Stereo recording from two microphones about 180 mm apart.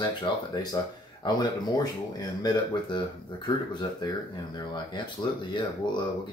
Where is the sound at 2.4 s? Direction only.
25° left (ahead or behind).